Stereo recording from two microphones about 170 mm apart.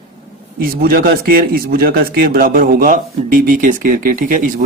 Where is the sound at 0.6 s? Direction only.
60° right (ahead or behind).